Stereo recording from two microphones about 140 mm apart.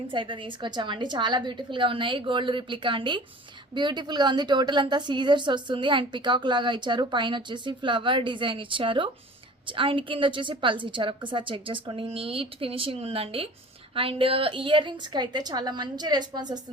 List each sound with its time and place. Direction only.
0.1 s a woman's voice: 35° right (ahead or behind)